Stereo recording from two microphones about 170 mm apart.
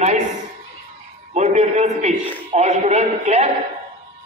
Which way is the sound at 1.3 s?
40° right (ahead or behind).